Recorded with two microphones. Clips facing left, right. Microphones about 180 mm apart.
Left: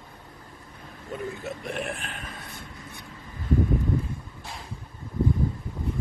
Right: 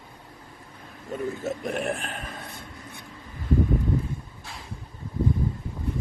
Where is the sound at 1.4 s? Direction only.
45° right (ahead or behind).